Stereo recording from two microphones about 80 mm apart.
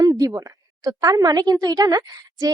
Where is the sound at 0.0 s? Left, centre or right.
Right.